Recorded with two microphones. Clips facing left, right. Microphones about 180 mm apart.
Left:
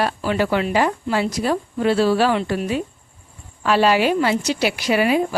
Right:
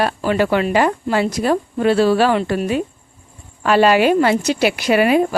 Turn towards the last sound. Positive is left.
turn(degrees=-60)  # may be behind; listen again after turning